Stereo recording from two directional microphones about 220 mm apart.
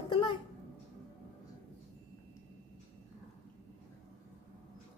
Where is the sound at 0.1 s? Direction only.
20° left (ahead or behind).